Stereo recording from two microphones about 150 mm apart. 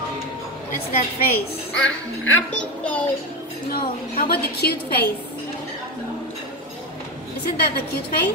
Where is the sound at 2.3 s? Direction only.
10° left (ahead or behind).